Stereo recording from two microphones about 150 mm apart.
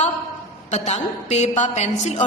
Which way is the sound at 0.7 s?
45° left (ahead or behind).